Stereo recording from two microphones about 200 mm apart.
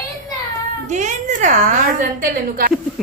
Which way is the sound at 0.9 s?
35° right (ahead or behind).